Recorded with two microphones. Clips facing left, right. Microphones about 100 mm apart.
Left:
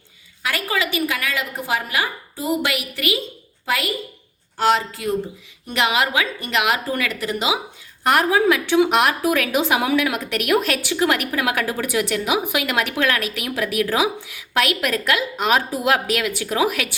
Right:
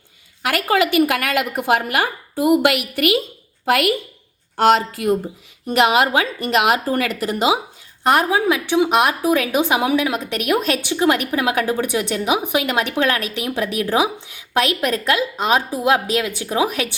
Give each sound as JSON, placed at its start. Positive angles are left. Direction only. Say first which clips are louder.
{"t": 0.4, "sound": "a woman's voice", "louder": "right 6 dB", "side_deg": -55}
{"t": 4.5, "sound": "a woman's voice", "louder": "right 4 dB", "side_deg": -55}
{"t": 8.0, "sound": "a woman's voice", "louder": "even", "side_deg": -20}